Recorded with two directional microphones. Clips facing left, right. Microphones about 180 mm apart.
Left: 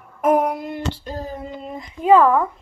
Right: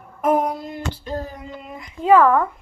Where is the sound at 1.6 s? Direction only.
30° left (ahead or behind).